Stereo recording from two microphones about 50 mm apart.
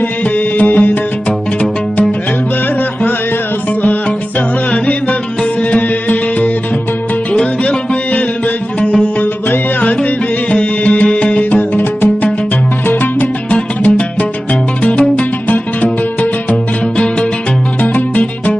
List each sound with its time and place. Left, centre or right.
0.6 s music: left
5.7 s music: left
11.8 s music: left
13.5 s music: left
17.9 s music: left